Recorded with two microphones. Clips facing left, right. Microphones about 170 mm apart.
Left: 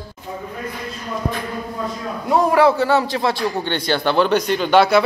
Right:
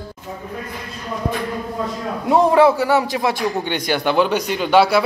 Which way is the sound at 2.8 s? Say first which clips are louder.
Even; 15° right (ahead or behind).